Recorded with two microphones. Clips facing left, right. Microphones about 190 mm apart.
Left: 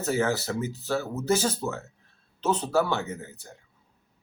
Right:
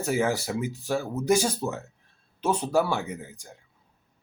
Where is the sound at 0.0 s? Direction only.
10° right (ahead or behind).